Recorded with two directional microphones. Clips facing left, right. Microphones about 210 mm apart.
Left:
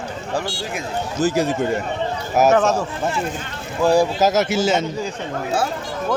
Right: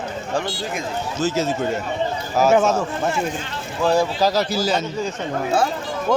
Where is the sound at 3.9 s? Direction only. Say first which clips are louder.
Left 2 dB; 15° left (ahead or behind).